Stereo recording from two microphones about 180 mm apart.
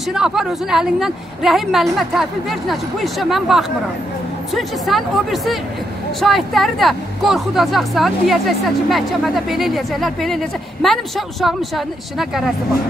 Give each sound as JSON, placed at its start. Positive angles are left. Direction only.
{"t": 0.1, "sound": "speech", "side_deg": -5}